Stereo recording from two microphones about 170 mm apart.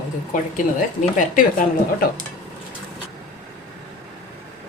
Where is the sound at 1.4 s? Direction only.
50° left (ahead or behind).